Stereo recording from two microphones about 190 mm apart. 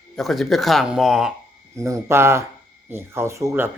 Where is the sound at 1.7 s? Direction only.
15° right (ahead or behind).